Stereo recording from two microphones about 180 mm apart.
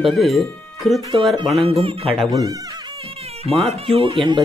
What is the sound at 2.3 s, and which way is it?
Speech, 20° right (ahead or behind).